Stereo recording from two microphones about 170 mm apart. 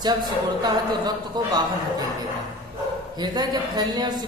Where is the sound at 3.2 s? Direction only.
25° right (ahead or behind).